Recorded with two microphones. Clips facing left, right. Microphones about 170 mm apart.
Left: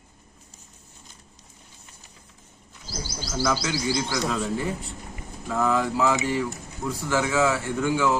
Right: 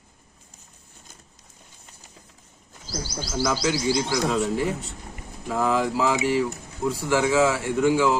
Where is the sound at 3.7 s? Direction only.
15° right (ahead or behind).